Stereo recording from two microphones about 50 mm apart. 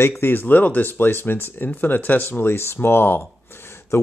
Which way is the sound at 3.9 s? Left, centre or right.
Left.